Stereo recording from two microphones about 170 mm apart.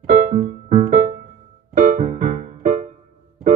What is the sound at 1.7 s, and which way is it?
Music, 55° right (ahead or behind).